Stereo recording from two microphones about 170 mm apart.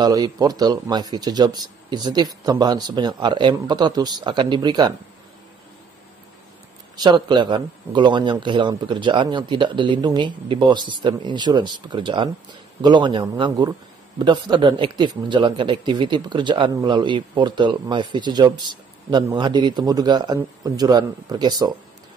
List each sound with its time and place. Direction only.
0.0 s a man's voice: 25° right (ahead or behind)
7.0 s a man's voice: 25° right (ahead or behind)